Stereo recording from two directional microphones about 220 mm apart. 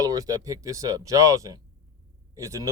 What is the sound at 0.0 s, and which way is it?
Speech, 15° right (ahead or behind).